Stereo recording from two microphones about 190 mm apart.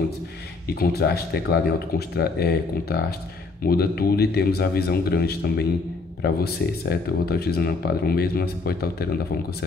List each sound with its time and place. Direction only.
0.7 s speech: 55° left (ahead or behind)